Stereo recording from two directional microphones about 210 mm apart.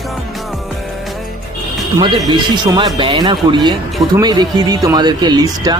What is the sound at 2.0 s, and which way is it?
Speech, 20° right (ahead or behind).